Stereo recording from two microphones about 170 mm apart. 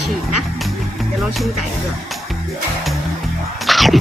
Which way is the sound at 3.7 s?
Centre (ahead or behind).